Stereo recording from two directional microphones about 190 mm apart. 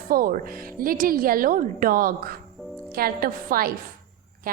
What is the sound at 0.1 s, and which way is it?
A woman's voice, 50° right (ahead or behind).